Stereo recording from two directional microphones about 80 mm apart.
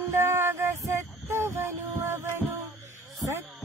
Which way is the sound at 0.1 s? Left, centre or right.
Right.